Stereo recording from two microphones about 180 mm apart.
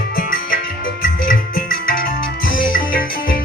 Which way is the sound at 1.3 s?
50° left (ahead or behind).